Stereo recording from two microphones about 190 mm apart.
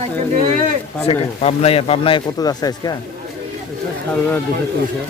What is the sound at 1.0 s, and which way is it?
Speech, 30° left (ahead or behind).